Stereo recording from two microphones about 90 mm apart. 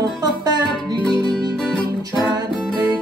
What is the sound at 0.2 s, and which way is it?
Music, 45° right (ahead or behind).